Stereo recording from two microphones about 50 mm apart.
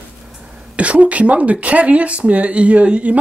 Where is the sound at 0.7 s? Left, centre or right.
Right.